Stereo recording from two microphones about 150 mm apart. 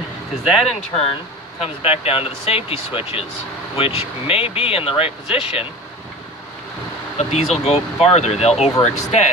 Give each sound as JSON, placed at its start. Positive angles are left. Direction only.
{"t": 0.4, "sound": "speech", "side_deg": 0}
{"t": 0.7, "sound": "speech", "side_deg": 40}
{"t": 7.2, "sound": "speech", "side_deg": 50}